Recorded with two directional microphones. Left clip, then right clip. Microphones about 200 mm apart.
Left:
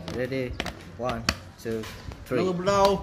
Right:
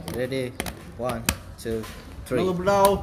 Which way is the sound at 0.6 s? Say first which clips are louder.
Right 1 dB; 10° right (ahead or behind).